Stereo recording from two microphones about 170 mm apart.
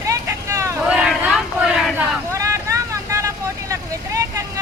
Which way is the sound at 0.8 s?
5° right (ahead or behind).